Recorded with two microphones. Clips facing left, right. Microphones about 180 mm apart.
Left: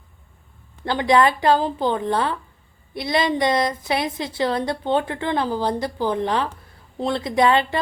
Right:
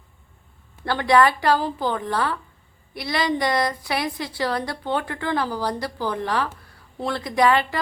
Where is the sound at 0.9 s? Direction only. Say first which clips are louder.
Left 1 dB; 20° left (ahead or behind).